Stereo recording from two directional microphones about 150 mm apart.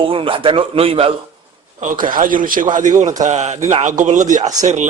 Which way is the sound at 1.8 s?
65° right (ahead or behind).